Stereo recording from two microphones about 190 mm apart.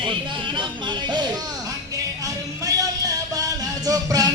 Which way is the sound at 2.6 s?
20° right (ahead or behind).